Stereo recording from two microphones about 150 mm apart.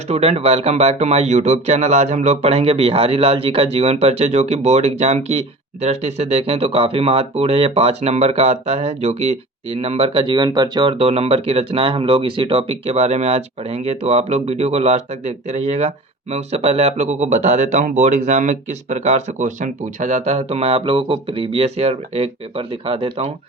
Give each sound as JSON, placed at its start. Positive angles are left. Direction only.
{"t": 0.1, "sound": "speech", "side_deg": -45}